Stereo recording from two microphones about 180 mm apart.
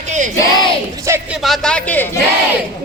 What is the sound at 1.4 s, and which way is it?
Speech, centre (ahead or behind).